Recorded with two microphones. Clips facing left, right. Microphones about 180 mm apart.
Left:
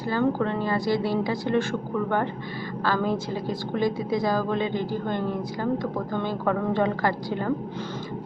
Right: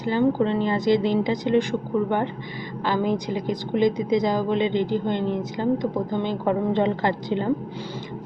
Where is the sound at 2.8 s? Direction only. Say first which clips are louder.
Right 2 dB; 15° right (ahead or behind).